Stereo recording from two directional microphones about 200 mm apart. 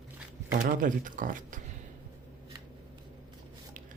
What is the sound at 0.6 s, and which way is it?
Speech, 45° right (ahead or behind).